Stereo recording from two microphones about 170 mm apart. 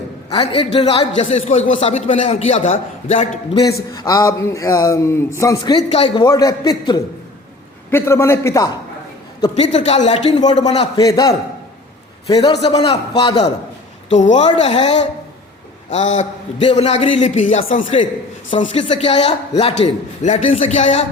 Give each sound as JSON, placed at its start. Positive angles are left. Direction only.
{"t": 0.3, "sound": "a man's voice", "side_deg": 35}
{"t": 3.9, "sound": "a man's voice", "side_deg": 20}
{"t": 5.9, "sound": "a man's voice", "side_deg": 35}
{"t": 6.2, "sound": "a man's voice", "side_deg": 20}
{"t": 9.6, "sound": "a man's voice", "side_deg": 40}
{"t": 10.3, "sound": "a man's voice", "side_deg": 25}
{"t": 10.6, "sound": "a man's voice", "side_deg": 40}
{"t": 10.9, "sound": "a man's voice", "side_deg": 25}
{"t": 14.1, "sound": "a man's voice", "side_deg": 45}
{"t": 16.6, "sound": "a man's voice", "side_deg": 30}
{"t": 18.7, "sound": "a man's voice", "side_deg": 35}